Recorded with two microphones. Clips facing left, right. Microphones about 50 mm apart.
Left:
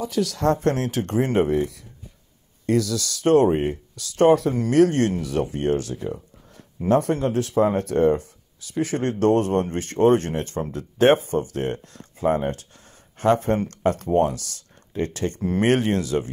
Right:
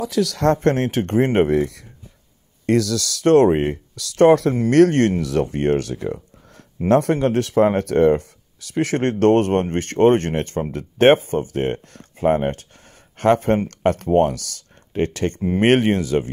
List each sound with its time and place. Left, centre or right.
0.1 s speech: right
0.6 s speech: right
1.5 s speech: right
4.6 s speech: right
5.2 s speech: right
15.9 s speech: right